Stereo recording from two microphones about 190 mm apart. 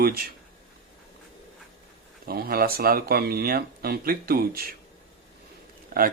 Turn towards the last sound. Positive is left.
turn(degrees=-55)  # may be behind; listen again after turning